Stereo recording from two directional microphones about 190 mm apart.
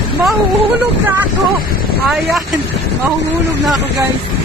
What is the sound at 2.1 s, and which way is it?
Speech, centre (ahead or behind).